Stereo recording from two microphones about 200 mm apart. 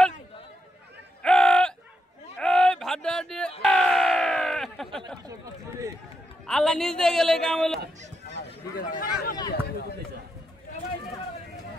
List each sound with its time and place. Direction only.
1.2 s a sound: 5° left (ahead or behind)
6.4 s a man's voice: 5° left (ahead or behind)
8.7 s speech: 50° left (ahead or behind)